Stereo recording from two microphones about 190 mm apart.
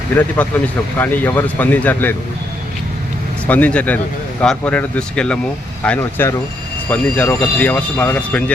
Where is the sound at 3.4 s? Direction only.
10° left (ahead or behind).